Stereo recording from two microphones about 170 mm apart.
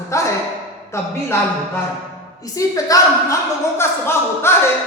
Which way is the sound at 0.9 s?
15° left (ahead or behind).